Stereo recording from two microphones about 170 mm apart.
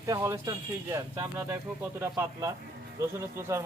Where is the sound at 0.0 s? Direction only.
15° right (ahead or behind).